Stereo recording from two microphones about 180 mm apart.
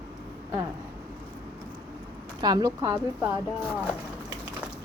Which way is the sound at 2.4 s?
20° right (ahead or behind).